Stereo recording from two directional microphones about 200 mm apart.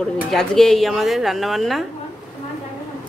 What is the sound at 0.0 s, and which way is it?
Speech, centre (ahead or behind).